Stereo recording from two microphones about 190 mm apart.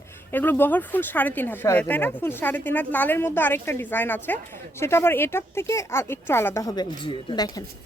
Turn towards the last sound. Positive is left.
turn(degrees=20)  # may be behind; listen again after turning